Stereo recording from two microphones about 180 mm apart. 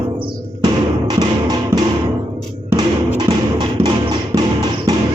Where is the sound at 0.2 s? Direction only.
25° right (ahead or behind).